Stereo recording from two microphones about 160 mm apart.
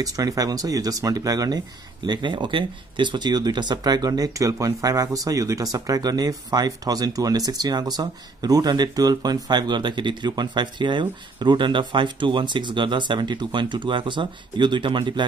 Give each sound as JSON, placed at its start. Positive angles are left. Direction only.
{"t": 0.0, "sound": "speech", "side_deg": -20}